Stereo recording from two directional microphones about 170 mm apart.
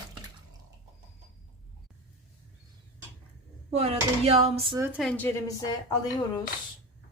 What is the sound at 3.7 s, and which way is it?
Speech, 35° right (ahead or behind).